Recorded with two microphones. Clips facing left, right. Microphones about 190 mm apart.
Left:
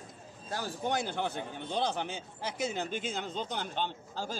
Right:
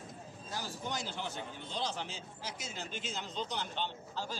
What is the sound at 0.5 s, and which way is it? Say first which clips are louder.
A man's voice: left 7 dB; 55° left (ahead or behind).